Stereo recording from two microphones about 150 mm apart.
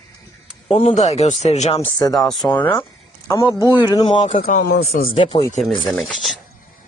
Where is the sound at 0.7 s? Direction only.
45° left (ahead or behind).